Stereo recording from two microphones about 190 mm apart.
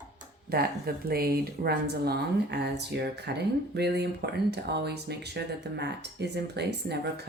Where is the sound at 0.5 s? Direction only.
55° right (ahead or behind).